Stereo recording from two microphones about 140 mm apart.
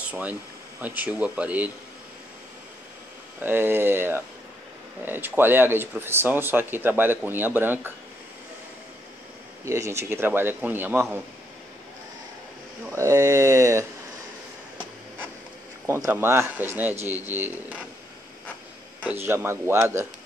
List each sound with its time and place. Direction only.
0.0 s speech: 10° right (ahead or behind)
3.3 s speech: 15° right (ahead or behind)
9.7 s speech: 20° right (ahead or behind)
12.9 s speech: 20° right (ahead or behind)
15.9 s speech: 15° right (ahead or behind)
19.0 s speech: 15° right (ahead or behind)